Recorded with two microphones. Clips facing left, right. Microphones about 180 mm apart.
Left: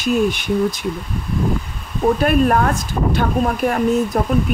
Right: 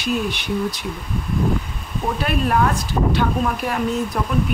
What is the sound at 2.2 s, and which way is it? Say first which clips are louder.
Speech: left 2 dB; 50° left (ahead or behind).